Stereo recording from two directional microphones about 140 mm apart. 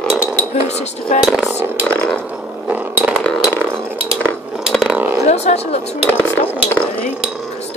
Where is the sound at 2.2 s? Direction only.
10° right (ahead or behind).